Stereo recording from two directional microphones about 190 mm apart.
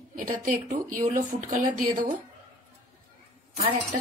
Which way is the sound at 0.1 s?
45° right (ahead or behind).